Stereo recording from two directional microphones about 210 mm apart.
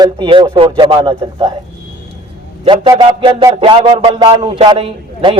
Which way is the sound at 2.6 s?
20° right (ahead or behind).